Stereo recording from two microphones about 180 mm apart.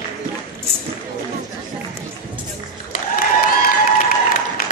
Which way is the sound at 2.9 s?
55° left (ahead or behind).